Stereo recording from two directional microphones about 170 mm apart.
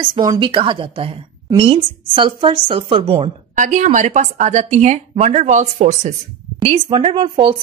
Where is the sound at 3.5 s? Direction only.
45° right (ahead or behind).